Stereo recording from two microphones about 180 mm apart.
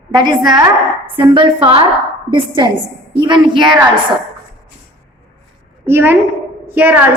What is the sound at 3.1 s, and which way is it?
Speech, 25° right (ahead or behind).